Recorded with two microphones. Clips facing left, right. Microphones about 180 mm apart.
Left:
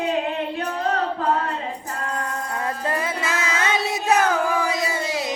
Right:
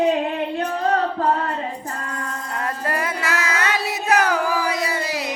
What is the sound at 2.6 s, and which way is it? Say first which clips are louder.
Music: right 1 dB; 25° left (ahead or behind).